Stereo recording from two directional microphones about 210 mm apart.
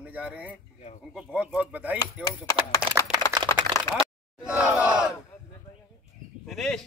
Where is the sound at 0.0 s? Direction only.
5° right (ahead or behind).